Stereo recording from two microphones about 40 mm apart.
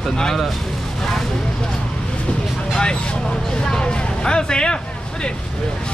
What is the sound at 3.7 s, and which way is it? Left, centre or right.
Speech, left.